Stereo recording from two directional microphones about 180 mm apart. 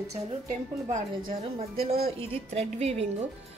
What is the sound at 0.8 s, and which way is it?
A woman's voice, 40° right (ahead or behind).